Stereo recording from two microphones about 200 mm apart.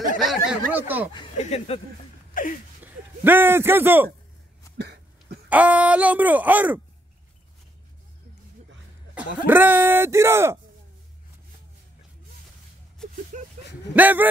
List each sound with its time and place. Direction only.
0.2 s speech: centre (ahead or behind)
1.4 s speech: 35° left (ahead or behind)
2.4 s a sound: 40° left (ahead or behind)
2.8 s a man's voice: 10° right (ahead or behind)
4.7 s cough: 55° right (ahead or behind)
5.5 s speech: 5° right (ahead or behind)
9.1 s speech: 10° right (ahead or behind)
13.3 s a sound: 40° right (ahead or behind)
13.9 s speech: 10° right (ahead or behind)